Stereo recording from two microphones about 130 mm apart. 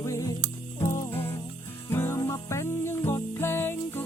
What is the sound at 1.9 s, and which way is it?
Music, 20° left (ahead or behind).